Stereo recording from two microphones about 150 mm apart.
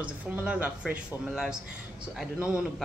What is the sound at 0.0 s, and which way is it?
Speech, 10° right (ahead or behind).